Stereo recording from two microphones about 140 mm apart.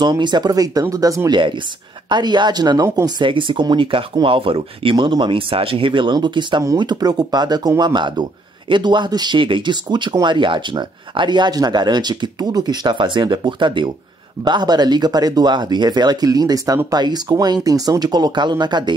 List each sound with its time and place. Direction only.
0.0 s speech: 30° right (ahead or behind)